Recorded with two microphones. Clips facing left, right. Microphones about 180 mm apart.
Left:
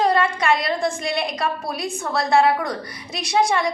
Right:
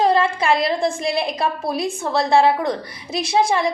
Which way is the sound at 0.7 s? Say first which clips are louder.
Right 2 dB; 30° right (ahead or behind).